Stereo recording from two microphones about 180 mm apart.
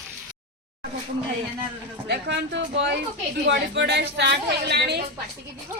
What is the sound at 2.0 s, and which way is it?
A woman's voice, 75° right (ahead or behind).